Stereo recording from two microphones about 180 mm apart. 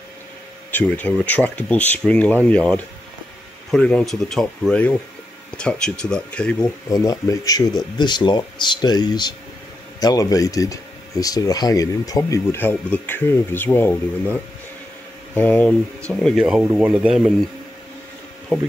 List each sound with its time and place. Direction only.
0.7 s speech: 10° left (ahead or behind)
6.9 s speech: 20° left (ahead or behind); by 16.4 s 5° left (ahead or behind)
16.4 s speech: 5° right (ahead or behind)